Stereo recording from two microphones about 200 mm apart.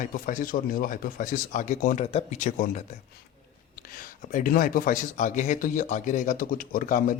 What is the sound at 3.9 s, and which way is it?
Speech, 40° left (ahead or behind).